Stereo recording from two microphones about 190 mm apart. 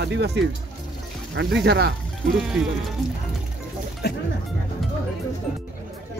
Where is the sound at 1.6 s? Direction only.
60° right (ahead or behind).